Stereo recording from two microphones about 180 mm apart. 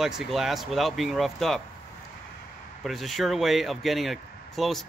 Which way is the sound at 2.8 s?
Centre (ahead or behind).